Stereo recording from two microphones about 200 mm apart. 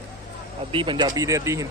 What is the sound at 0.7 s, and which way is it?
Speech, 25° right (ahead or behind).